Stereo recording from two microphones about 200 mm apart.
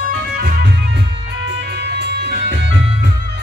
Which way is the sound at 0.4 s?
55° right (ahead or behind).